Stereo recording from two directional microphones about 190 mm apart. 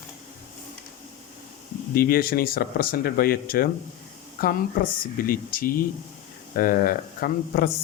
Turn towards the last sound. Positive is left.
turn(degrees=50)  # may be behind; listen again after turning